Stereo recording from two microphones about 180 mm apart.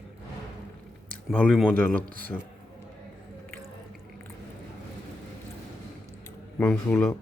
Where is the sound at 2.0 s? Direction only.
50° right (ahead or behind).